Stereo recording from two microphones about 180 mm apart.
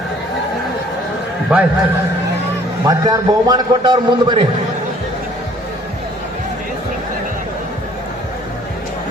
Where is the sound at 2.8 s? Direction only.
20° right (ahead or behind).